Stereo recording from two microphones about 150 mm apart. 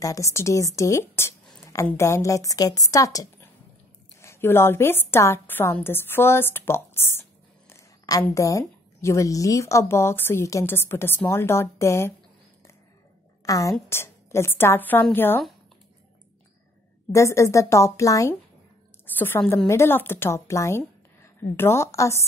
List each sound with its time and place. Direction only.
0.0 s a woman's voice: 20° left (ahead or behind)
13.5 s a woman's voice: 20° left (ahead or behind)
17.1 s a woman's voice: 20° left (ahead or behind)